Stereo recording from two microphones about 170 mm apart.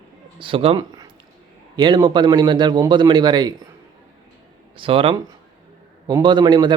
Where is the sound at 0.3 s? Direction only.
30° right (ahead or behind).